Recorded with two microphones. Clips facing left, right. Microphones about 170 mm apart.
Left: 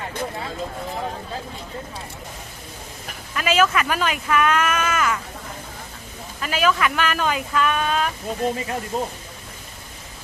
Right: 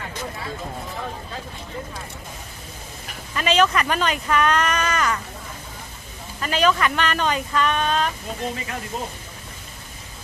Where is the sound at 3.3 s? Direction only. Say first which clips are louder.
Even; 5° left (ahead or behind).